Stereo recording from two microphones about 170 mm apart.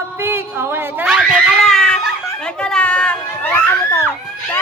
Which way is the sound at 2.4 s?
5° left (ahead or behind).